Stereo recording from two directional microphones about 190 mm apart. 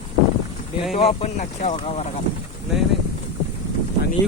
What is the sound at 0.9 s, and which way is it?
Speech, 30° left (ahead or behind).